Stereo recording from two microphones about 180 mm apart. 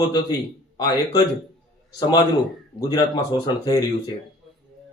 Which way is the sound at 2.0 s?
25° left (ahead or behind).